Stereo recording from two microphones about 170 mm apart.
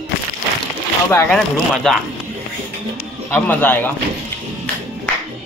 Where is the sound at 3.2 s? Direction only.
10° left (ahead or behind).